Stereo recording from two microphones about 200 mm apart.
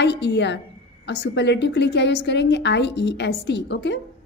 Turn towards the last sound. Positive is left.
turn(degrees=60)  # may be behind; listen again after turning